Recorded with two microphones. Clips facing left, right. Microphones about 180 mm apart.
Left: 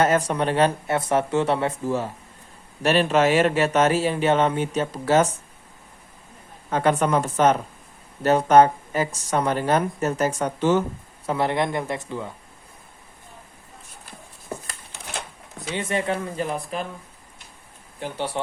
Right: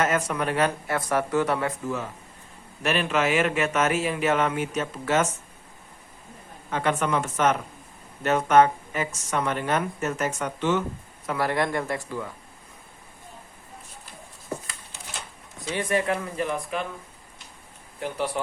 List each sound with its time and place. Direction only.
0.0 s speech: 35° left (ahead or behind)
6.7 s speech: 40° left (ahead or behind)
11.3 s speech: 25° left (ahead or behind)
15.5 s speech: 25° left (ahead or behind)